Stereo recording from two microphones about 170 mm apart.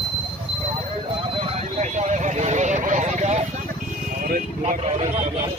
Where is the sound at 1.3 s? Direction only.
35° right (ahead or behind).